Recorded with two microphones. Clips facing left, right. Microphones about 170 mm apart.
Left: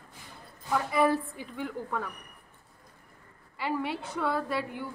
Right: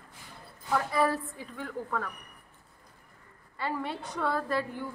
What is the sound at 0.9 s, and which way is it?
A woman's voice, 20° left (ahead or behind).